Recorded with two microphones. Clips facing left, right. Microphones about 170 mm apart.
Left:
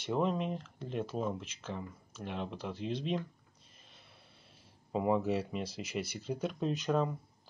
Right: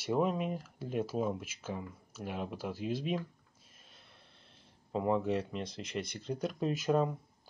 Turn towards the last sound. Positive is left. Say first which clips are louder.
# right 2 dB
turn(degrees=-5)  # may be behind; listen again after turning